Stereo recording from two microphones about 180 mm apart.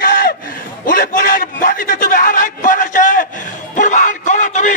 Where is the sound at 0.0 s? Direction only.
55° left (ahead or behind).